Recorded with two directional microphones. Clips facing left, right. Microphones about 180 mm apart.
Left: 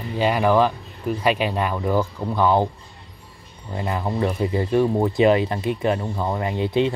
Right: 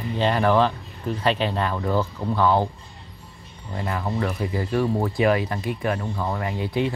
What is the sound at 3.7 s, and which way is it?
Speech, 20° left (ahead or behind).